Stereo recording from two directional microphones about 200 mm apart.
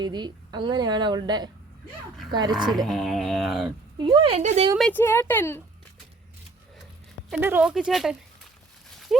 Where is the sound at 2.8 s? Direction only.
Centre (ahead or behind).